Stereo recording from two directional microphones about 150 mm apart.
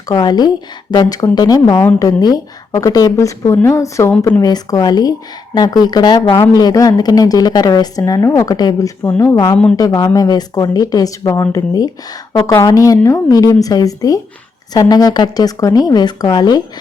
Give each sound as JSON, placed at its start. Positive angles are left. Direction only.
{"t": 0.1, "sound": "a woman's voice", "side_deg": 25}